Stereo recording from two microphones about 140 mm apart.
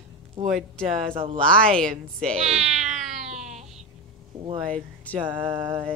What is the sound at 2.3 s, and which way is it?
Speech, 50° right (ahead or behind).